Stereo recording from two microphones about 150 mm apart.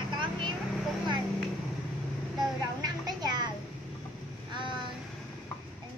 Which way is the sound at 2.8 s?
25° right (ahead or behind).